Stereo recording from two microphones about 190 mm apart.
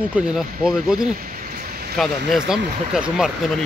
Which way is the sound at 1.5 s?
55° right (ahead or behind).